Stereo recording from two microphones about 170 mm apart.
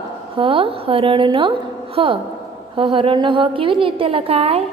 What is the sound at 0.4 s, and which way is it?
A woman's voice, 30° right (ahead or behind).